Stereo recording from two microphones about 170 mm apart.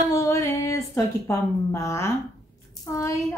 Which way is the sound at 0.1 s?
20° left (ahead or behind).